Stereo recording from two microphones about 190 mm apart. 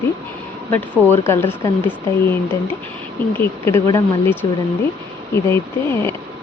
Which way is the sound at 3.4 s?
15° left (ahead or behind).